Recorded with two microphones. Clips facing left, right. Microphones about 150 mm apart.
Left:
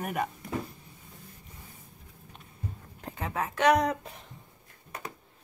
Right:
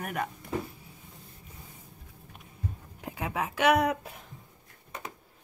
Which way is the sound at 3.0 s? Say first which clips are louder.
Even; 10° right (ahead or behind).